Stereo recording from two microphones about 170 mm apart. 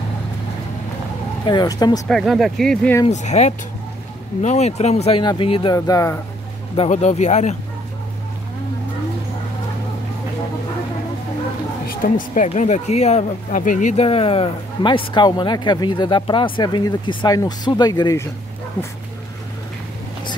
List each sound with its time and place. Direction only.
1.4 s speech: 25° left (ahead or behind)
2.0 s speech: centre (ahead or behind)
3.1 s speech: 45° left (ahead or behind)
5.8 s speech: 20° left (ahead or behind)
6.8 s speech: 40° left (ahead or behind)
11.9 s a woman's voice: 55° left (ahead or behind)
12.4 s speech: 40° left (ahead or behind); by 18.3 s 20° left (ahead or behind)